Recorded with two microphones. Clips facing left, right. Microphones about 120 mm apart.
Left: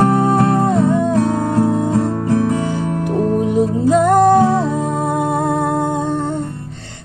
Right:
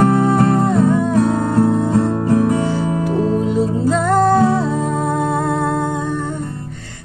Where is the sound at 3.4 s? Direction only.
20° left (ahead or behind).